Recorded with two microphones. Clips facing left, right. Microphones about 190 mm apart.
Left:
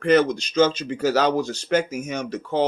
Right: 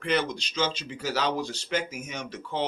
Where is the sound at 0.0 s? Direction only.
45° left (ahead or behind).